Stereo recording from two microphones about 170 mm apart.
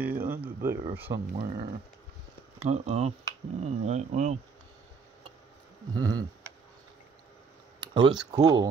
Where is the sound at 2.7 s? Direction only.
40° right (ahead or behind).